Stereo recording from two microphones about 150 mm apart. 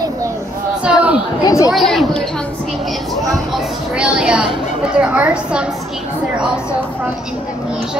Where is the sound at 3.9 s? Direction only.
5° right (ahead or behind).